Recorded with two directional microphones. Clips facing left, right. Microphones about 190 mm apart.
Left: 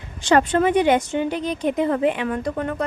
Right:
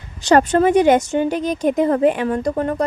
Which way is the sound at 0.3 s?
40° right (ahead or behind).